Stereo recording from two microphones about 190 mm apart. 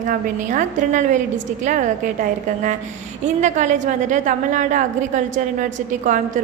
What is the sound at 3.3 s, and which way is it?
A woman's voice, 40° right (ahead or behind).